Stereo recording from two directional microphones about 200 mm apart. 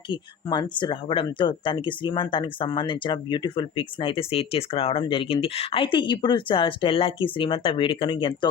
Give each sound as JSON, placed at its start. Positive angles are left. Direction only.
{"t": 0.1, "sound": "speech", "side_deg": 20}